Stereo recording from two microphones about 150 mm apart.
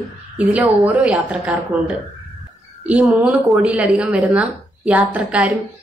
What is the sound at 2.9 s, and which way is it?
Speech, 10° right (ahead or behind).